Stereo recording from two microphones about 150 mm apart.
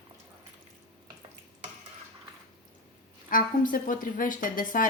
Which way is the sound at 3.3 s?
65° left (ahead or behind).